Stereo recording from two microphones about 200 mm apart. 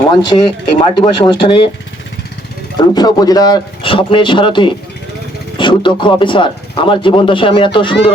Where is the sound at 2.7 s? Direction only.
20° left (ahead or behind).